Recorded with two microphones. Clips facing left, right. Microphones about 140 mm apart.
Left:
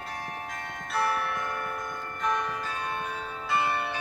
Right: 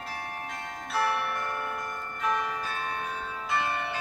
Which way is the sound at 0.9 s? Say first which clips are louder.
Even; centre (ahead or behind).